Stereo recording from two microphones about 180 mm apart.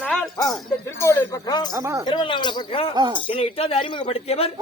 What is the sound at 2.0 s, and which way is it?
Speech, 25° left (ahead or behind).